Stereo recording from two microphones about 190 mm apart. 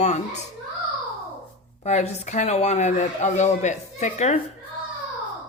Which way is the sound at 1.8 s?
35° left (ahead or behind).